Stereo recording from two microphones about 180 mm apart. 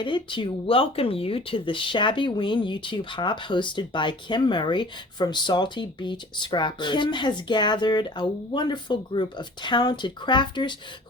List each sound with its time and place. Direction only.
0.0 s speech: 25° left (ahead or behind)